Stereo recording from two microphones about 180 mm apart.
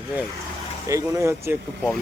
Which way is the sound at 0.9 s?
15° right (ahead or behind).